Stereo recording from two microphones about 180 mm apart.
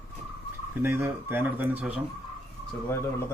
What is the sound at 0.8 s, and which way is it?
Speech, 15° right (ahead or behind).